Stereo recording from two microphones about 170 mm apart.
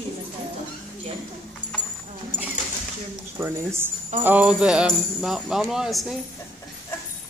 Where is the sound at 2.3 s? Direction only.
25° left (ahead or behind).